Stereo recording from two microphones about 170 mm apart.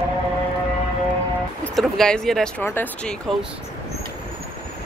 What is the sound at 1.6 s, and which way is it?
Speech, 5° left (ahead or behind).